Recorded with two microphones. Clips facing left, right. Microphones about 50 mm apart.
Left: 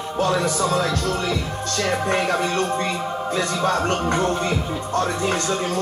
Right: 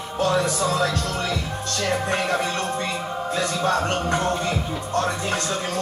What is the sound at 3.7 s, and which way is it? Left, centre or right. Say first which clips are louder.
Speech: even; left.